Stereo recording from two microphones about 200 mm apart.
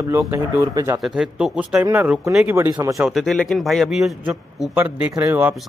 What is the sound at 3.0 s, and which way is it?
Speech, centre (ahead or behind).